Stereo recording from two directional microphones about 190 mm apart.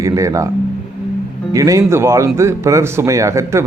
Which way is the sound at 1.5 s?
15° right (ahead or behind).